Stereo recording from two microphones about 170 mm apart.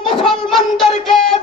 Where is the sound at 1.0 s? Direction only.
Centre (ahead or behind).